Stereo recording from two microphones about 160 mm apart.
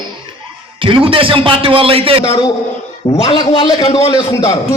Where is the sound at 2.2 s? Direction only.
30° left (ahead or behind).